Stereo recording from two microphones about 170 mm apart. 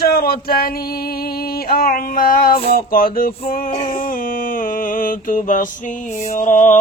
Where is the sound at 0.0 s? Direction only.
60° left (ahead or behind).